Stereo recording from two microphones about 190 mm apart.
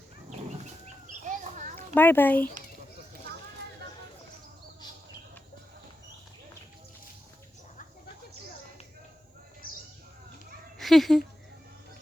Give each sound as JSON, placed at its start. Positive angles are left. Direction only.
{"t": 0.3, "sound": "chicken", "side_deg": -40}
{"t": 2.0, "sound": "a child's voice", "side_deg": 10}
{"t": 10.8, "sound": "speech", "side_deg": 0}